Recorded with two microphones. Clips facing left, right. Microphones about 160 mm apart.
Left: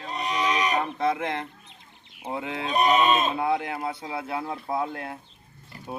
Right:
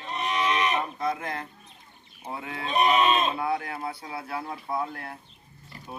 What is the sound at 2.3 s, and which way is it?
Speech, 20° left (ahead or behind).